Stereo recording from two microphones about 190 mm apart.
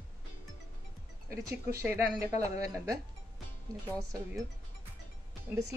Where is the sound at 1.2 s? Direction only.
15° right (ahead or behind).